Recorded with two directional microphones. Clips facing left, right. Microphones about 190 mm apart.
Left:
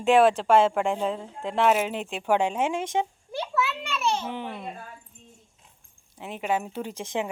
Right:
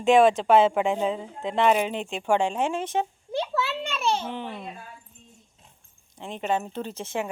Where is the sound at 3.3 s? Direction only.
25° right (ahead or behind).